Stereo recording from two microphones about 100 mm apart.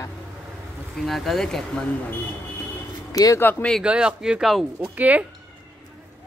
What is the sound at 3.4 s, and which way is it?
Speech, 25° left (ahead or behind).